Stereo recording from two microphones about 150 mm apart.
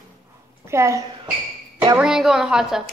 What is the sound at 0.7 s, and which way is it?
Speech, 20° right (ahead or behind).